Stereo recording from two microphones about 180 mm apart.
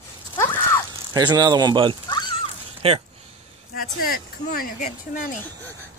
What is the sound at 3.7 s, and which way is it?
Speech, 55° left (ahead or behind).